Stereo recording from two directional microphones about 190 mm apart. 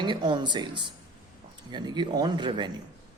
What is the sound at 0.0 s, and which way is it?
A man's voice, 25° right (ahead or behind).